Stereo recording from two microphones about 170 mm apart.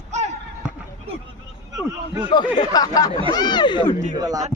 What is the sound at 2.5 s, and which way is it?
Speech, 20° left (ahead or behind).